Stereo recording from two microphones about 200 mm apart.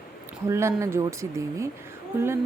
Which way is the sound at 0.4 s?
15° right (ahead or behind).